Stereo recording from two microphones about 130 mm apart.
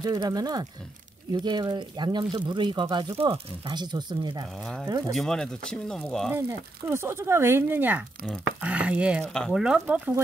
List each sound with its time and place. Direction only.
0.0 s speech: 30° right (ahead or behind)
5.1 s speech: 5° left (ahead or behind)
6.9 s speech: 20° right (ahead or behind)
9.3 s speech: 5° left (ahead or behind)
9.6 s speech: 10° right (ahead or behind)